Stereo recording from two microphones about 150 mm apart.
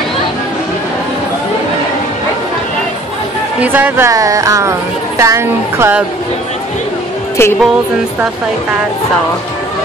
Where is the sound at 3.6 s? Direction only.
10° right (ahead or behind).